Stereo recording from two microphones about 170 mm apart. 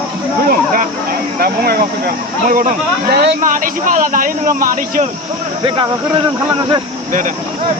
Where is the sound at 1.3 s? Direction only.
60° right (ahead or behind).